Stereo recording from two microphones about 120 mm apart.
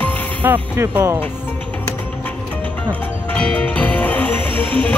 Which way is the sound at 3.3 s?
10° left (ahead or behind).